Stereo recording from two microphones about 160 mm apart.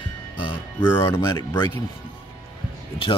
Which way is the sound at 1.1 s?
25° left (ahead or behind).